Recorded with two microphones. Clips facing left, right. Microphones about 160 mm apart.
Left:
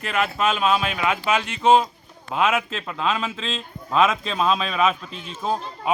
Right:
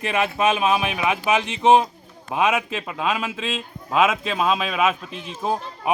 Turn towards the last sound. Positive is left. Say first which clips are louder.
# right 1 dB
turn(degrees=-15)  # may be behind; listen again after turning